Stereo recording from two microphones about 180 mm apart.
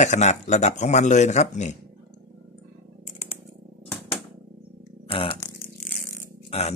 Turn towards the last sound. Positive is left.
turn(degrees=35)  # may be behind; listen again after turning